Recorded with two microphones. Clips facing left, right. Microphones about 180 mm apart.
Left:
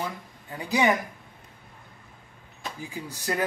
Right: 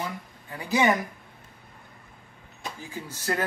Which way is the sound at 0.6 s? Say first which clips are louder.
Even; 15° left (ahead or behind).